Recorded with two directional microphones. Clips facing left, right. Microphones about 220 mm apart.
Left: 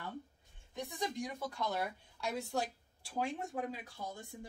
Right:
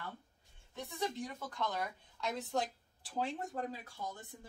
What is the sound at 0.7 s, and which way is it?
Speech, 15° left (ahead or behind).